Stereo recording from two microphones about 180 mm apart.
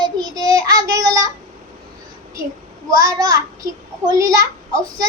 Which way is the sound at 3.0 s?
20° right (ahead or behind).